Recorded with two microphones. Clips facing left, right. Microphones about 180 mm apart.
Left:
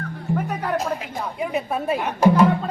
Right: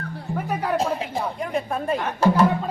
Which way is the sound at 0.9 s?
30° right (ahead or behind).